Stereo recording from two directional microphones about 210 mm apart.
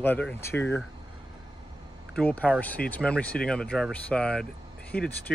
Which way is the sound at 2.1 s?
5° left (ahead or behind).